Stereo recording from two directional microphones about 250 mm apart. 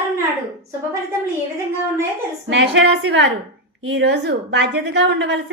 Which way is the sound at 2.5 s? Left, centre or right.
Right.